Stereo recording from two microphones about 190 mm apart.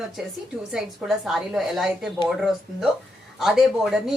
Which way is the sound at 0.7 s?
Centre (ahead or behind).